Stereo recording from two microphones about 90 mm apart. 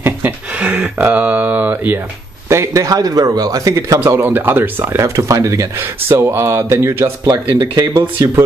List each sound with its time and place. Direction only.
0.0 s speech: 20° right (ahead or behind)
2.5 s speech: 35° right (ahead or behind)
4.0 s speech: 25° right (ahead or behind)
7.2 s speech: 45° right (ahead or behind)